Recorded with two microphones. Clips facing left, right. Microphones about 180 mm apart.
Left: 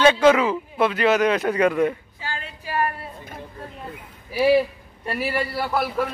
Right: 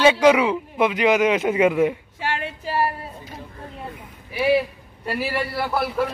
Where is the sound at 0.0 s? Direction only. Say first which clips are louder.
Even; 10° right (ahead or behind).